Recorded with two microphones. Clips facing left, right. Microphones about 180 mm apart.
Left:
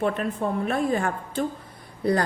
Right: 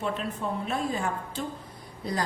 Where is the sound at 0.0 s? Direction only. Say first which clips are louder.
Left 6 dB; 55° left (ahead or behind).